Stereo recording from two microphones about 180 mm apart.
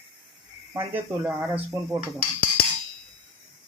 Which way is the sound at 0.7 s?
10° right (ahead or behind).